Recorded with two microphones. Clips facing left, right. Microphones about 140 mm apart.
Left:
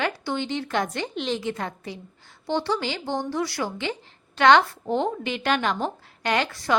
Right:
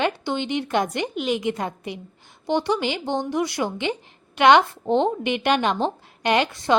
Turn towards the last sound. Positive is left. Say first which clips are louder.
# right 4 dB
turn(degrees=-20)  # may be behind; listen again after turning